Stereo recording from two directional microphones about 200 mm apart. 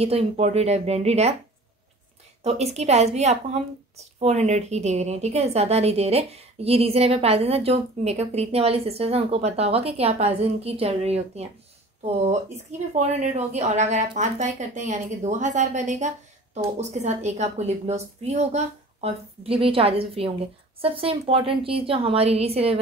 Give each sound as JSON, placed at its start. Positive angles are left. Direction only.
{"t": 0.0, "sound": "a woman's voice", "side_deg": -30}
{"t": 2.4, "sound": "a woman's voice", "side_deg": -30}